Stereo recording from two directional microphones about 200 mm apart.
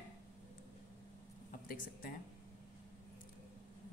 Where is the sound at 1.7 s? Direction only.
45° left (ahead or behind).